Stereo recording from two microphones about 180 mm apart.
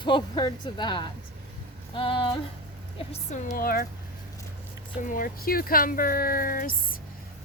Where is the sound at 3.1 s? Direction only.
45° left (ahead or behind).